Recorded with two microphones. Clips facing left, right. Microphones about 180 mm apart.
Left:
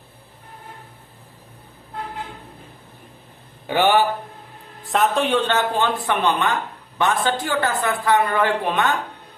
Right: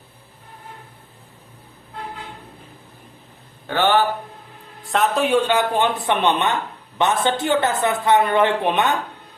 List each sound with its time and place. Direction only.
3.7 s a man's voice: 15° left (ahead or behind)
4.8 s a woman's voice: centre (ahead or behind); by 9.0 s 20° right (ahead or behind)